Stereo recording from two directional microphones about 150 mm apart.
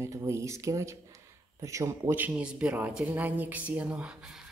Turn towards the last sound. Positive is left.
turn(degrees=-5)  # may be behind; listen again after turning